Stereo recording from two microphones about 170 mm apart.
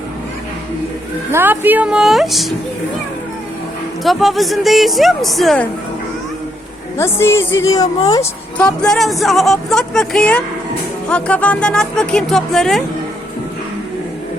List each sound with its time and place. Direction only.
1.3 s speech: 10° right (ahead or behind)
4.0 s speech: centre (ahead or behind)
6.9 s a woman's voice: 15° left (ahead or behind)
8.5 s speech: 5° left (ahead or behind)